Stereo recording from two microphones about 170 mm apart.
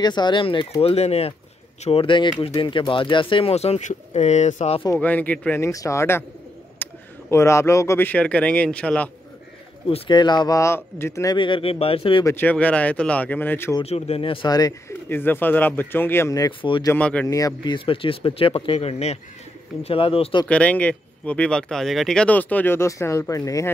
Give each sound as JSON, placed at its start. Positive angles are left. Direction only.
{"t": 0.0, "sound": "speech", "side_deg": 25}
{"t": 4.8, "sound": "a man's voice", "side_deg": 10}
{"t": 9.8, "sound": "speech", "side_deg": 30}
{"t": 11.3, "sound": "speech", "side_deg": 30}
{"t": 12.3, "sound": "speech", "side_deg": 10}
{"t": 13.8, "sound": "speech", "side_deg": 35}
{"t": 16.9, "sound": "speech", "side_deg": 10}
{"t": 17.3, "sound": "speech", "side_deg": 20}
{"t": 20.4, "sound": "speech", "side_deg": 10}